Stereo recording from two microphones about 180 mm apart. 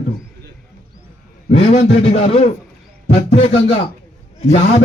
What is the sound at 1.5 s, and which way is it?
Speech, 35° left (ahead or behind).